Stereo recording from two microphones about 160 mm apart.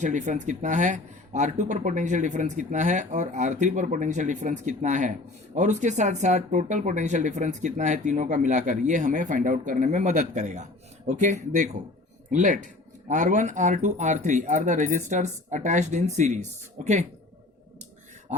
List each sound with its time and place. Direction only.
0.0 s speech: 50° right (ahead or behind)